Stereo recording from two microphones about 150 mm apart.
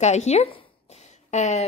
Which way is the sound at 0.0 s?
50° left (ahead or behind).